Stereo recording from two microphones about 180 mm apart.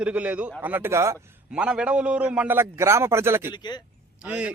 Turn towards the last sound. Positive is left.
turn(degrees=-10)  # may be behind; listen again after turning